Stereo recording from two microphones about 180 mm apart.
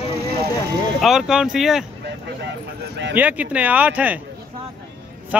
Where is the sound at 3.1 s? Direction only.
10° right (ahead or behind).